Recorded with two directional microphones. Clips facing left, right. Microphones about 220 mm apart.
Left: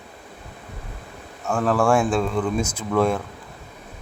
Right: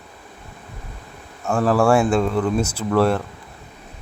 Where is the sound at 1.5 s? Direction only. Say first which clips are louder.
Right 3 dB; 10° right (ahead or behind).